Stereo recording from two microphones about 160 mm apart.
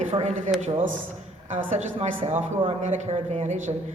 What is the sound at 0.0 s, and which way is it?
A man's voice, 45° right (ahead or behind).